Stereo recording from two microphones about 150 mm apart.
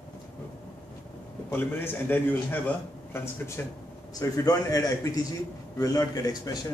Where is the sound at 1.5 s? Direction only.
15° left (ahead or behind).